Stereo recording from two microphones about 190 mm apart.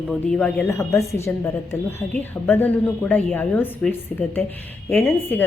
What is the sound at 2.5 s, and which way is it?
A woman's voice, 10° left (ahead or behind).